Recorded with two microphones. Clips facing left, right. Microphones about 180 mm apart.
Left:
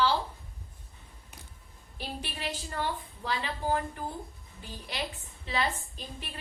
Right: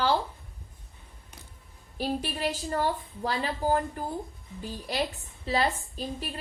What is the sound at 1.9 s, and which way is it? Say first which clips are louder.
A woman's voice: right 9 dB; 40° right (ahead or behind).